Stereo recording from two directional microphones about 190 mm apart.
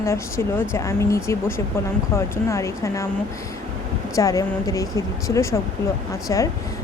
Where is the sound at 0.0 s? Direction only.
15° left (ahead or behind).